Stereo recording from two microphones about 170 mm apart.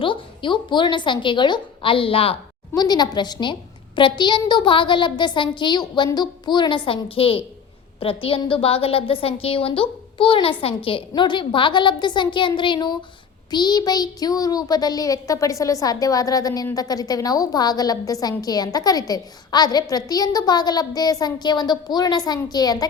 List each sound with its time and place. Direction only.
0.0 s a child's voice: 30° left (ahead or behind)